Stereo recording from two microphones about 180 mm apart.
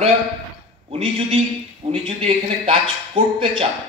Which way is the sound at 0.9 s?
30° right (ahead or behind).